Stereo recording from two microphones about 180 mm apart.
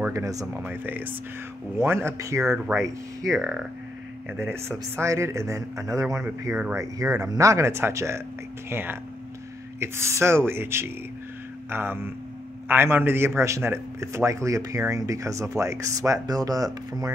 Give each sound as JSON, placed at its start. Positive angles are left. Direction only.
{"t": 0.0, "sound": "a man's voice", "side_deg": -20}
{"t": 3.3, "sound": "speech", "side_deg": -5}
{"t": 4.3, "sound": "a man's voice", "side_deg": -15}